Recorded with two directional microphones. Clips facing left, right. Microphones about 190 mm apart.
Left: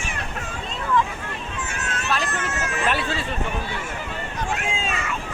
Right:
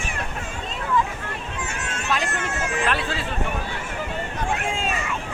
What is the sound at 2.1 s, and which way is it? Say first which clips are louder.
Speech: right 1 dB; 15° right (ahead or behind).